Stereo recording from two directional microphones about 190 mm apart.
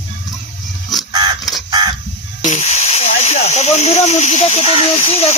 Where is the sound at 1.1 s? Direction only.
20° right (ahead or behind).